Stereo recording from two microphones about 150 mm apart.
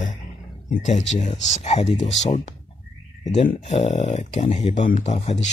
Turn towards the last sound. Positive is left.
turn(degrees=50)  # may be behind; listen again after turning